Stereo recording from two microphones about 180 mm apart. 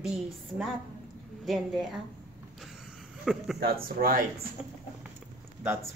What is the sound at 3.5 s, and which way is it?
Speech, 55° right (ahead or behind).